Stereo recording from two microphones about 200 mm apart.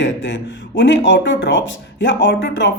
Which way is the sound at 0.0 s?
65° left (ahead or behind).